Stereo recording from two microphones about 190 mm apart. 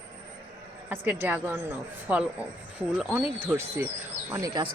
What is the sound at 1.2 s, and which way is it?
Speech, 10° right (ahead or behind).